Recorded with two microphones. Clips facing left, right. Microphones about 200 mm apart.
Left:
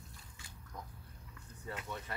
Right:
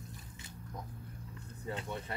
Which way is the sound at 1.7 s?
25° right (ahead or behind).